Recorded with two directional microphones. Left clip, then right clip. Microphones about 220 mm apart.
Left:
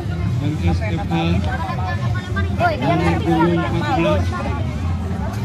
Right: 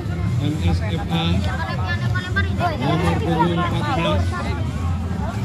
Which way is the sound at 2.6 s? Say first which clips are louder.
Left 7 dB; 45° left (ahead or behind).